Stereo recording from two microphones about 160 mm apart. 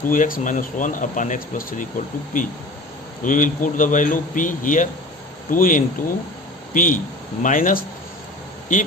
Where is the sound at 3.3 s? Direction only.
55° left (ahead or behind).